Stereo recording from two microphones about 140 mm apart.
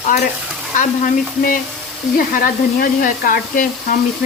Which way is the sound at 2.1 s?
90° left.